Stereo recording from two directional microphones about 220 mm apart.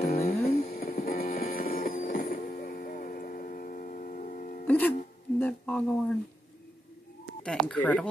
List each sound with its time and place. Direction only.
0.3 s music: 30° left (ahead or behind)
4.6 s music: 5° left (ahead or behind)
5.4 s speech: 5° left (ahead or behind)
7.4 s speech: 5° left (ahead or behind)